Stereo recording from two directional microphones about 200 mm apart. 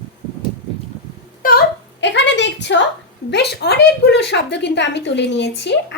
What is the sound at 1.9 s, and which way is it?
A woman's voice, 60° left (ahead or behind).